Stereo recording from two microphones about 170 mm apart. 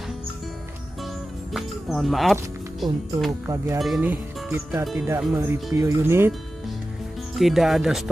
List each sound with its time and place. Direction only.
1.5 s music: centre (ahead or behind)
2.8 s speech: centre (ahead or behind)
3.3 s speech: 15° right (ahead or behind)
3.8 s speech: 5° right (ahead or behind)
7.3 s speech: centre (ahead or behind)